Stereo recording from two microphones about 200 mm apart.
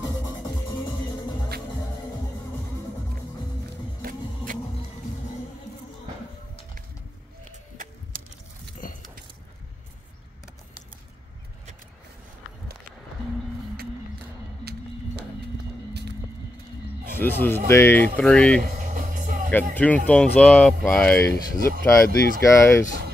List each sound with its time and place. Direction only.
4.0 s music: 40° right (ahead or behind)
7.7 s music: 40° right (ahead or behind)
8.8 s a sound: 45° left (ahead or behind)
14.6 s a sound: 55° right (ahead or behind)
17.2 s speech: 10° left (ahead or behind)
18.6 s music: 40° right (ahead or behind)
19.7 s speech: 10° left (ahead or behind)